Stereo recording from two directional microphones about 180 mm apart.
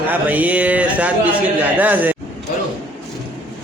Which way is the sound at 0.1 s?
10° right (ahead or behind).